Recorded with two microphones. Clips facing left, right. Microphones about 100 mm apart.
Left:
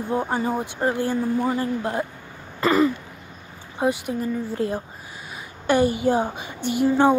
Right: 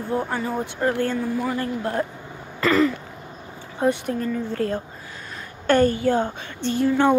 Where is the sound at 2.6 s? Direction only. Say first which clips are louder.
Even; 20° left (ahead or behind).